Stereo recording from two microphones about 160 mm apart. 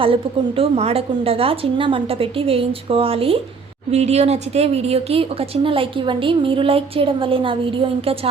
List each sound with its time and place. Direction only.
0.0 s a woman's voice: 35° right (ahead or behind)